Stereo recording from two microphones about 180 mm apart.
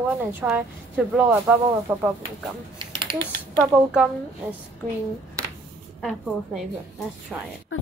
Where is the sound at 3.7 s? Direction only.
5° right (ahead or behind).